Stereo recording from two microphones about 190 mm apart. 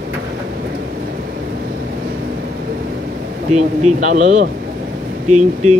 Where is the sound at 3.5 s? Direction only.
35° right (ahead or behind).